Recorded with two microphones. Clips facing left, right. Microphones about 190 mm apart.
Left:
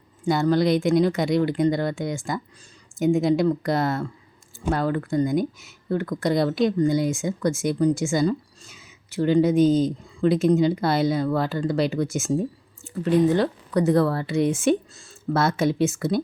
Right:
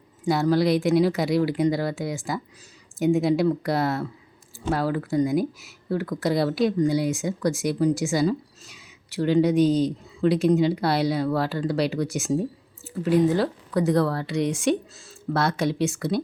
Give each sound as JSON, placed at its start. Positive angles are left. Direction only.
{"t": 0.3, "sound": "speech", "side_deg": 0}